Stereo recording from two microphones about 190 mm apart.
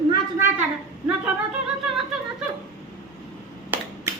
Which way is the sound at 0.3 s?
15° right (ahead or behind).